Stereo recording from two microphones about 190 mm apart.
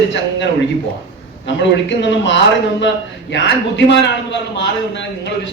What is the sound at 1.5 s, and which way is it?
A man's voice, 70° left (ahead or behind).